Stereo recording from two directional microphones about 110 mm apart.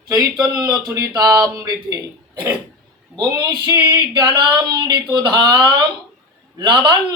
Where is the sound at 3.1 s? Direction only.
40° right (ahead or behind).